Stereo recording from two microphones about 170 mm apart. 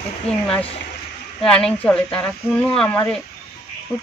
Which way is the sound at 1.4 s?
5° left (ahead or behind).